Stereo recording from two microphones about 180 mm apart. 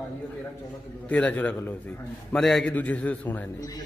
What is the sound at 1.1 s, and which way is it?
A man's voice, 10° left (ahead or behind).